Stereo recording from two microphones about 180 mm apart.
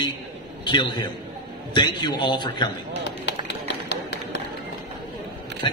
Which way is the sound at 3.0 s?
75° left (ahead or behind).